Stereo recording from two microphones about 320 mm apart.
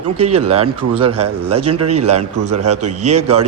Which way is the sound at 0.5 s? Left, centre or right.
Right.